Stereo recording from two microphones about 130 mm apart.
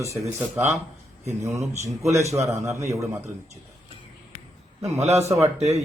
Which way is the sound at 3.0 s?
20° right (ahead or behind).